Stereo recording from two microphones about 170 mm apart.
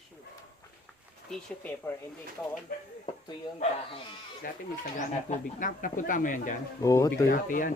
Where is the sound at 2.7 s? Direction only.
55° left (ahead or behind).